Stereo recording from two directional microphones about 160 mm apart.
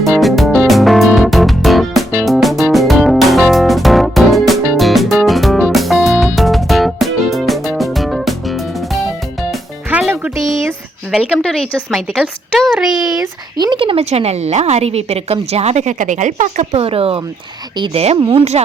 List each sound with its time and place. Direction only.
0.0 s music: centre (ahead or behind)
11.1 s speech: centre (ahead or behind)
13.6 s a woman's voice: 30° right (ahead or behind)